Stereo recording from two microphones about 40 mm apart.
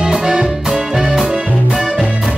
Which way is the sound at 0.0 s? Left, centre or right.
Centre.